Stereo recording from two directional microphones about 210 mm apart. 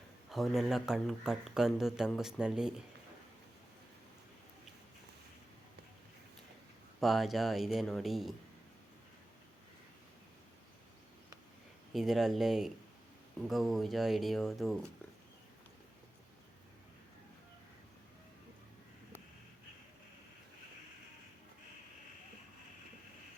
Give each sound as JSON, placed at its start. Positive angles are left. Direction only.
{"t": 0.3, "sound": "speech", "side_deg": 0}
{"t": 7.0, "sound": "speech", "side_deg": 0}
{"t": 11.9, "sound": "speech", "side_deg": 0}